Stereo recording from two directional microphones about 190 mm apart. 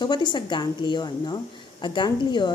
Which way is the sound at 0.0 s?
25° left (ahead or behind).